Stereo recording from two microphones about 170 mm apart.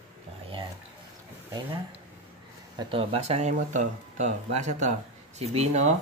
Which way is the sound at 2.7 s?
35° right (ahead or behind).